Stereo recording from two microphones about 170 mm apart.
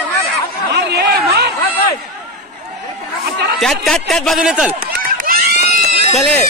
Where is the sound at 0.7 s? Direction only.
70° right (ahead or behind).